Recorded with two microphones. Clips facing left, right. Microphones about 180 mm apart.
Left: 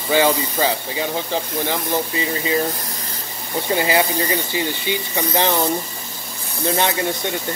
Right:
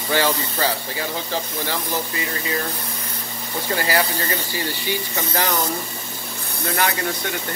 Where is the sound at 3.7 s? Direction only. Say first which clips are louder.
Left 3 dB; 20° left (ahead or behind).